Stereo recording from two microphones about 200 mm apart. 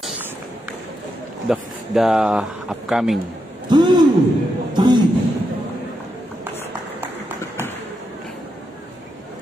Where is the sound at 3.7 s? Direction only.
20° right (ahead or behind).